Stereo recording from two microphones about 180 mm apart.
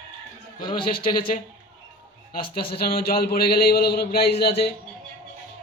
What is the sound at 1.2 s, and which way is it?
Speech, 50° left (ahead or behind).